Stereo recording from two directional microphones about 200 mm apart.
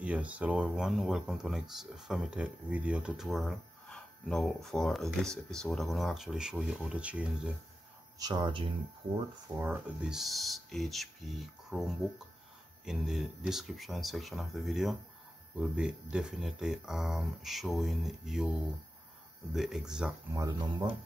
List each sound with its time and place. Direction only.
0.0 s speech: 5° right (ahead or behind)
8.2 s speech: 20° right (ahead or behind)
9.6 s speech: 10° right (ahead or behind)
12.8 s speech: centre (ahead or behind)
19.5 s speech: centre (ahead or behind)
20.3 s speech: 15° right (ahead or behind)